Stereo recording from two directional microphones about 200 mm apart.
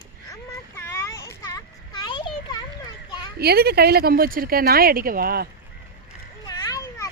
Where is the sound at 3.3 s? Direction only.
50° right (ahead or behind).